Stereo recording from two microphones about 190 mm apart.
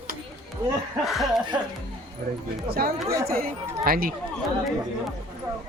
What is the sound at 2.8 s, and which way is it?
Speech, 50° right (ahead or behind).